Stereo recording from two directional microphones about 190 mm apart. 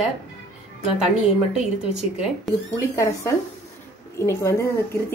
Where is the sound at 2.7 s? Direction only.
15° left (ahead or behind).